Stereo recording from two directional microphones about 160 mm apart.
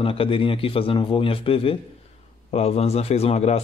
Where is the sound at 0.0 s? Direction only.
35° left (ahead or behind).